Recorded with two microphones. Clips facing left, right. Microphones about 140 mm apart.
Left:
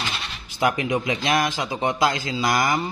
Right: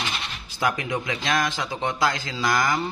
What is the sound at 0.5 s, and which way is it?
A man's voice, 20° left (ahead or behind).